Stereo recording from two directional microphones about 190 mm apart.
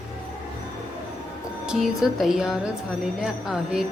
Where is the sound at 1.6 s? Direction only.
Centre (ahead or behind).